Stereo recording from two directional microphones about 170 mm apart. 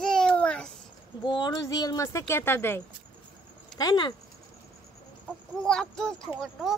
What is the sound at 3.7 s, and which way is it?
Speech, 25° left (ahead or behind).